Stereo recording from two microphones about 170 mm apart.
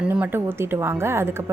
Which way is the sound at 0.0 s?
10° right (ahead or behind).